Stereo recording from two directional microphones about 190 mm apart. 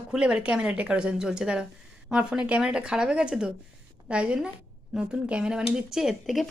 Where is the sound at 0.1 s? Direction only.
5° right (ahead or behind).